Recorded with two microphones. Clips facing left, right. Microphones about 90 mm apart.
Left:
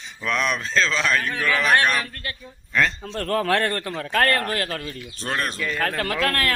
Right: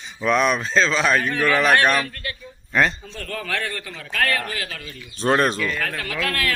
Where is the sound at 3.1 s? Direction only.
60° left (ahead or behind).